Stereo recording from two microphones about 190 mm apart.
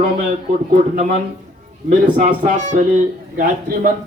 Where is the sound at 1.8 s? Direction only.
40° right (ahead or behind).